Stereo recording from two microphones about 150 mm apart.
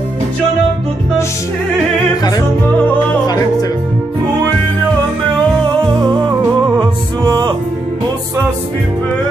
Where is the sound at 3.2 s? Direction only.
25° left (ahead or behind).